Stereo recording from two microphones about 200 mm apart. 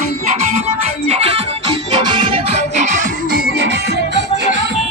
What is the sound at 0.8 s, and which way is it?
Music, 30° right (ahead or behind).